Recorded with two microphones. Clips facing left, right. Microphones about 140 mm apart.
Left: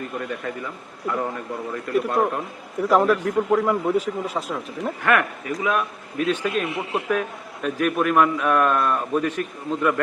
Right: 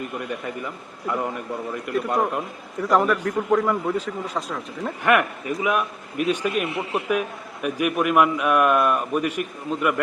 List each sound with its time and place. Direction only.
0.2 s a man's voice: 15° right (ahead or behind)
2.0 s a man's voice: centre (ahead or behind)
5.0 s a man's voice: 20° right (ahead or behind)